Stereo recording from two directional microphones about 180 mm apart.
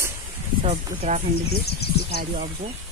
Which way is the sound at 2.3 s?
50° right (ahead or behind).